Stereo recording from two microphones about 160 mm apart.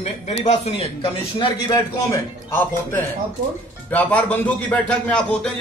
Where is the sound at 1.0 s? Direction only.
30° left (ahead or behind).